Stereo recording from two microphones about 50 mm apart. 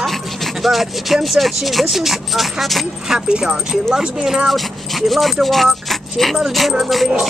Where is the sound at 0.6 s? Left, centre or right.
Centre.